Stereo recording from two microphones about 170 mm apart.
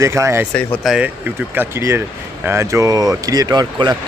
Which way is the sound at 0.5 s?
Centre (ahead or behind).